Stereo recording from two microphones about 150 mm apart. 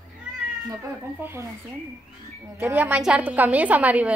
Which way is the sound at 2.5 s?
15° right (ahead or behind).